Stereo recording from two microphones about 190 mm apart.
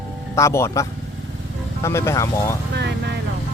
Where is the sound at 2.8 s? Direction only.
60° right (ahead or behind).